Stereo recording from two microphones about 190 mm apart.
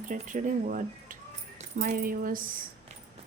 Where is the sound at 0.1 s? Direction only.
45° right (ahead or behind).